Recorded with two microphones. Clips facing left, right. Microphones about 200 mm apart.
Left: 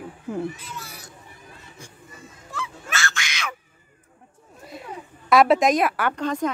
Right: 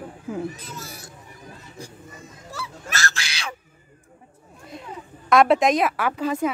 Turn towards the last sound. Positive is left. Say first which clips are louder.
# right 1 dB
turn(degrees=-5)  # may be behind; listen again after turning